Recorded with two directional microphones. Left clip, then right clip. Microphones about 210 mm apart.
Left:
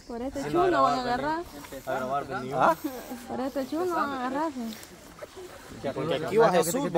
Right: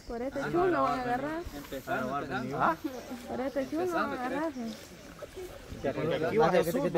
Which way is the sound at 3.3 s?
40° left (ahead or behind).